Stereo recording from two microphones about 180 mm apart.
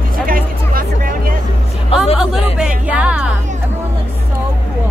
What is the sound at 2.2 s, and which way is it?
Chatter, 5° right (ahead or behind).